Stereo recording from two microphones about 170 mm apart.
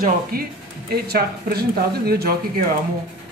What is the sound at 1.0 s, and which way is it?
Speech, 65° right (ahead or behind).